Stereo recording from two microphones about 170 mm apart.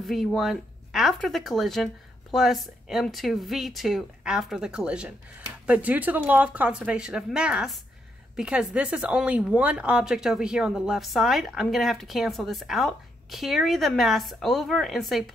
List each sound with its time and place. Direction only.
0.0 s speech: centre (ahead or behind)